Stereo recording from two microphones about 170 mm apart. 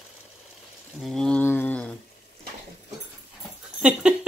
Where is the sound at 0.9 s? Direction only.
Centre (ahead or behind).